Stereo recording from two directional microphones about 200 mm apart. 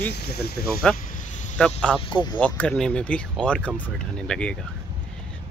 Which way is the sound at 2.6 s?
5° left (ahead or behind).